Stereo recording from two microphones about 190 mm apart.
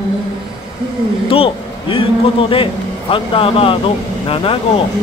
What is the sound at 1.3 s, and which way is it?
Speech, 30° left (ahead or behind).